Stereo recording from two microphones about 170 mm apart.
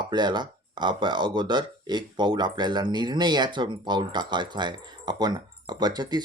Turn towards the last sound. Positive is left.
turn(degrees=-25)  # may be behind; listen again after turning